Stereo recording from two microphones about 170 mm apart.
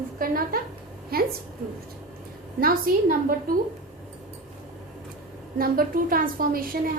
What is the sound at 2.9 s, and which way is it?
Speech, 60° right (ahead or behind).